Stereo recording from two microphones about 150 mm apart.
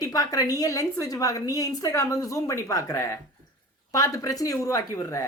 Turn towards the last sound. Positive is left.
turn(degrees=20)  # may be behind; listen again after turning